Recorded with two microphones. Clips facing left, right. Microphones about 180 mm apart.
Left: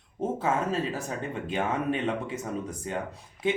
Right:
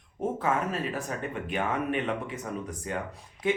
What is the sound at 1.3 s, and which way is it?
Speech, 25° left (ahead or behind).